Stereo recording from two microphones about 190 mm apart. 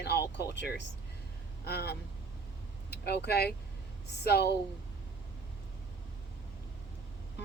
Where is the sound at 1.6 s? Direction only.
55° left (ahead or behind).